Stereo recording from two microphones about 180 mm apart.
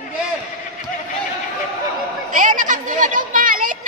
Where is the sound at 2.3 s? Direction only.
45° right (ahead or behind).